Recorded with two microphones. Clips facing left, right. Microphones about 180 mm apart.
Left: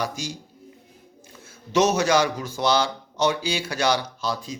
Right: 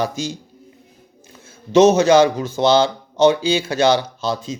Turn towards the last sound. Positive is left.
turn(degrees=-25)  # may be behind; listen again after turning